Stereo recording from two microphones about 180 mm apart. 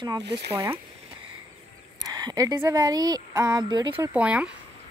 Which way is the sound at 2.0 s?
20° right (ahead or behind).